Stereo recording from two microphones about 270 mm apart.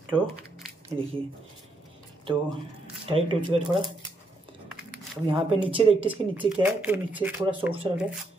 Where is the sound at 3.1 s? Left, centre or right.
Centre.